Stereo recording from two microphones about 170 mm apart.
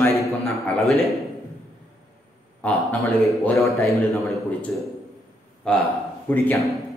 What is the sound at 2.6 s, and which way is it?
Speech, 10° left (ahead or behind).